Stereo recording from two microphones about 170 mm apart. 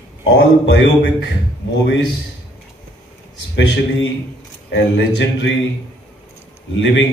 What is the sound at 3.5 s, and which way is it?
A man's voice, 90° left.